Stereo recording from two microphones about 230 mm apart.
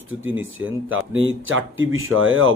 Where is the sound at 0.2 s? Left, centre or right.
Right.